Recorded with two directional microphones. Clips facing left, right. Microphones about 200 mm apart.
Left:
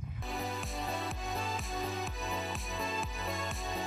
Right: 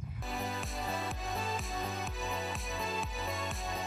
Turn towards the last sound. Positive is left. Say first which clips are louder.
# left 1 dB
turn(degrees=0)  # may be behind; listen again after turning